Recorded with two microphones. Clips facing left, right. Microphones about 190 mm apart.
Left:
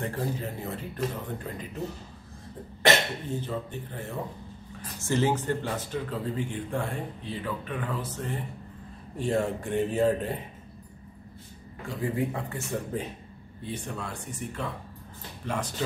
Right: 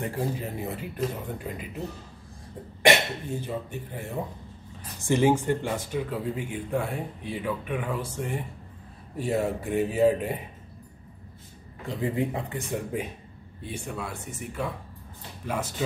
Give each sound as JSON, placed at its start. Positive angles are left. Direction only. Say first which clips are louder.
{"t": 0.0, "sound": "speech", "louder": "right 1 dB", "side_deg": -15}
{"t": 2.8, "sound": "speech", "louder": "right 2 dB", "side_deg": -10}
{"t": 12.0, "sound": "speech", "louder": "right 1 dB", "side_deg": -20}